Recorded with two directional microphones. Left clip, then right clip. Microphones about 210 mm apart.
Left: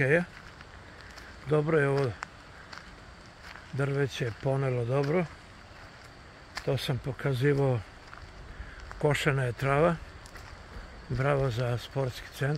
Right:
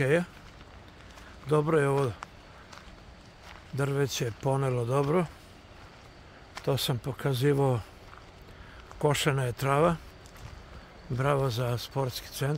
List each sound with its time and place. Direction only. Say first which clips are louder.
0.0 s speech: left 1 dB; 15° right (ahead or behind)
1.5 s speech: right 1 dB; 20° right (ahead or behind)
3.7 s speech: right 1 dB; 15° right (ahead or behind)
6.6 s speech: right 2 dB; 20° right (ahead or behind)
9.0 s speech: even; 15° right (ahead or behind)
11.1 s speech: right 1 dB; 15° right (ahead or behind)